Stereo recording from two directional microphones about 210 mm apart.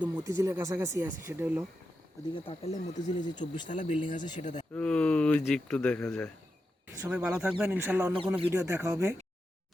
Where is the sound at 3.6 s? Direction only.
35° left (ahead or behind).